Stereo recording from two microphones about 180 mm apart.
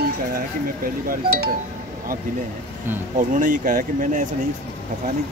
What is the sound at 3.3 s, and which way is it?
Speech, 45° right (ahead or behind).